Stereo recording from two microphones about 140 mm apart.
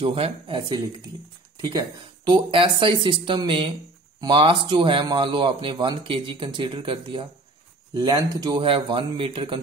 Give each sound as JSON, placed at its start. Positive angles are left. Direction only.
{"t": 0.0, "sound": "speech", "side_deg": -40}
{"t": 2.2, "sound": "speech", "side_deg": -35}
{"t": 7.9, "sound": "speech", "side_deg": -25}